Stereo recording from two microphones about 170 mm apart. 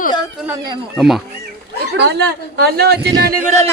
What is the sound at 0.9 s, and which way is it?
Speech, centre (ahead or behind).